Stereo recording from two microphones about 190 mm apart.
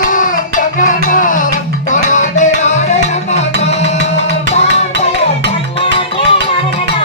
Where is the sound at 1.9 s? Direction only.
40° left (ahead or behind).